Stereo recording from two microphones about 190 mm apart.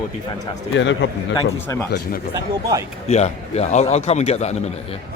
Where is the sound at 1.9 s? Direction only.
50° left (ahead or behind).